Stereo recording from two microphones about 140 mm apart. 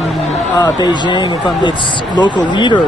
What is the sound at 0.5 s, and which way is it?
Speech, 30° left (ahead or behind).